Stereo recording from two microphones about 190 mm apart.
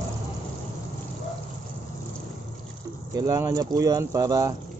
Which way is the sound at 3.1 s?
20° right (ahead or behind).